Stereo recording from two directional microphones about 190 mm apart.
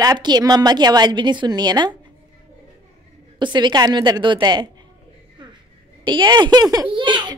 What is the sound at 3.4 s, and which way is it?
A child's voice, 25° right (ahead or behind).